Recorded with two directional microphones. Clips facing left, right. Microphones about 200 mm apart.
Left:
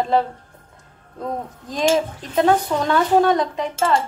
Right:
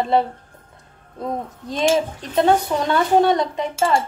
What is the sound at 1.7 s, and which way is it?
Speech, centre (ahead or behind).